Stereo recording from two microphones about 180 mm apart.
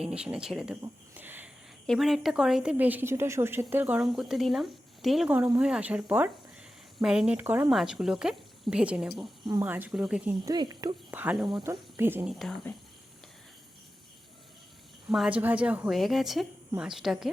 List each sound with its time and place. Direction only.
0.1 s a woman's voice: 5° right (ahead or behind)
0.8 s a sound: 10° right (ahead or behind)
1.9 s a woman's voice: centre (ahead or behind)
9.5 s speech: 15° right (ahead or behind)
10.4 s speech: 20° right (ahead or behind)
11.1 s speech: 10° right (ahead or behind)
12.3 s a woman's voice: centre (ahead or behind)
15.1 s a woman's voice: 5° right (ahead or behind)